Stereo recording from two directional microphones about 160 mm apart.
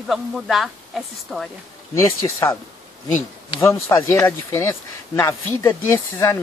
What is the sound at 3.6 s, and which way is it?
Speech, 15° left (ahead or behind).